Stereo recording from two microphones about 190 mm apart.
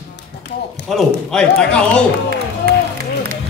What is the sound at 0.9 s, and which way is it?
Speech, 5° left (ahead or behind).